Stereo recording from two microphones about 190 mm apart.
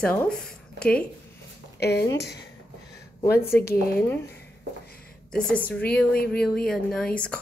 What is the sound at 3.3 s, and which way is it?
Speech, 15° left (ahead or behind).